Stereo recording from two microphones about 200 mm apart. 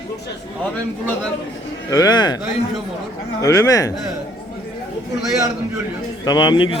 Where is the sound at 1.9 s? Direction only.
20° left (ahead or behind).